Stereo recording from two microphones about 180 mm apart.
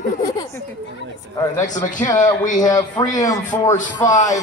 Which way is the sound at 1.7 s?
45° left (ahead or behind).